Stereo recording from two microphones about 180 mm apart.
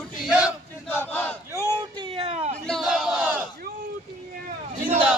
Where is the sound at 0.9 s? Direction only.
10° left (ahead or behind).